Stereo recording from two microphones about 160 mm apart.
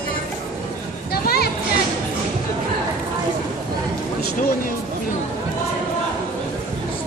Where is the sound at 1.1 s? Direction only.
75° left (ahead or behind).